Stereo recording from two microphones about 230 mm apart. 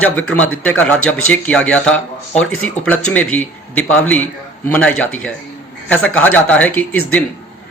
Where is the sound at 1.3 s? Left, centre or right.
Centre.